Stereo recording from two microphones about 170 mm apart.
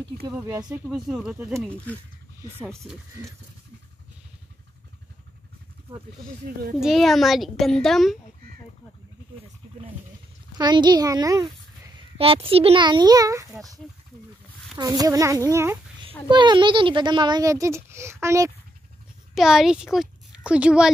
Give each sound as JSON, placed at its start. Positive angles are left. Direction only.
{"t": 0.4, "sound": "a child's voice", "side_deg": -15}
{"t": 6.4, "sound": "speech", "side_deg": -60}
{"t": 6.8, "sound": "a child's voice", "side_deg": 0}
{"t": 10.6, "sound": "a child's voice", "side_deg": -25}
{"t": 12.2, "sound": "a child's voice", "side_deg": -35}
{"t": 14.8, "sound": "a child's voice", "side_deg": -20}
{"t": 16.3, "sound": "a child's voice", "side_deg": -25}
{"t": 19.3, "sound": "a child's voice", "side_deg": -5}